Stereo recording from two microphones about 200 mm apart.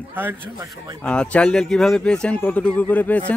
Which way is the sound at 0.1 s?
10° right (ahead or behind).